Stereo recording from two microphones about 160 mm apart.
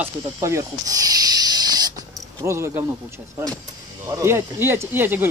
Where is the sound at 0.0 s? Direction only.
15° right (ahead or behind).